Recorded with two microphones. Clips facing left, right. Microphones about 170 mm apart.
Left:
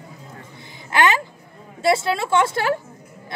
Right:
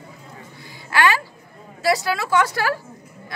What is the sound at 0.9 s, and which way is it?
A woman's voice, 20° left (ahead or behind).